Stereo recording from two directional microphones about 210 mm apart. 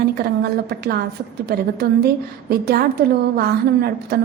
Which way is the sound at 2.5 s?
50° right (ahead or behind).